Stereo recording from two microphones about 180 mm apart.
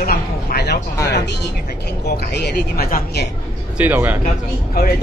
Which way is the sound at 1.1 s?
70° left (ahead or behind).